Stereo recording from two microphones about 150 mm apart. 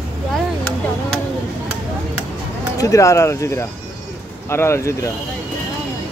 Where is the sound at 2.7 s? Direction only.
20° left (ahead or behind).